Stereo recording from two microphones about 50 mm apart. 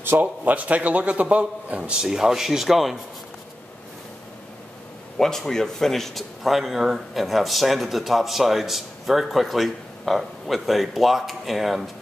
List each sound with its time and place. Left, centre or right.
0.2 s a man's voice: right; by 3.0 s centre
5.2 s speech: centre